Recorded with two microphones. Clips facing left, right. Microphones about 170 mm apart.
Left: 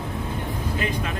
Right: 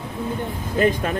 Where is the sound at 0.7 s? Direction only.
45° right (ahead or behind).